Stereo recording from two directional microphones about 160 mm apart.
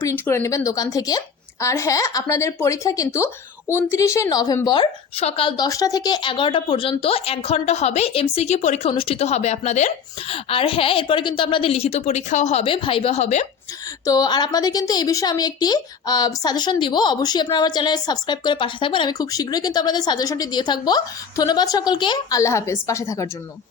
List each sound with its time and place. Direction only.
0.0 s a woman's voice: 15° left (ahead or behind)
5.1 s a woman's voice: 35° left (ahead or behind)
14.0 s a woman's voice: 25° left (ahead or behind)